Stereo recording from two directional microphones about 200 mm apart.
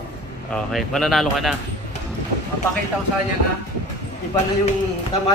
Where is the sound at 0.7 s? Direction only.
Centre (ahead or behind).